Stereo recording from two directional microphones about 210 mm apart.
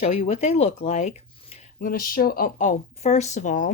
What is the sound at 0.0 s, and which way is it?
Speech, 30° left (ahead or behind).